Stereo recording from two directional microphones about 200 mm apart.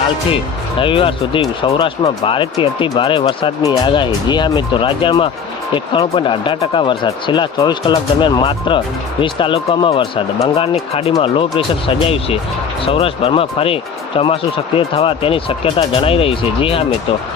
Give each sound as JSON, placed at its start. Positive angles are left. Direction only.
{"t": 0.3, "sound": "speech", "side_deg": 25}